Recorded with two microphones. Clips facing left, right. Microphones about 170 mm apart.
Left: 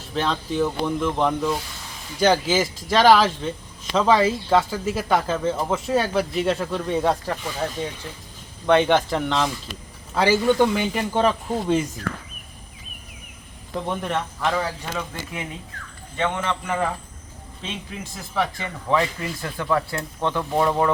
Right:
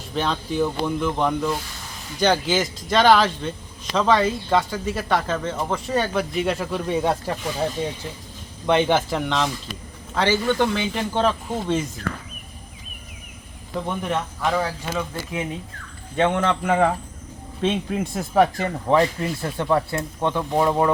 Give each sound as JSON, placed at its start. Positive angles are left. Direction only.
{"t": 0.1, "sound": "speech", "side_deg": 0}
{"t": 8.6, "sound": "speech", "side_deg": -5}
{"t": 13.7, "sound": "speech", "side_deg": 0}
{"t": 16.1, "sound": "speech", "side_deg": -60}
{"t": 18.9, "sound": "speech", "side_deg": -30}